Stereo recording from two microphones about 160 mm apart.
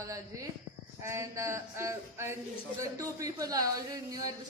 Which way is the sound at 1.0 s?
20° right (ahead or behind).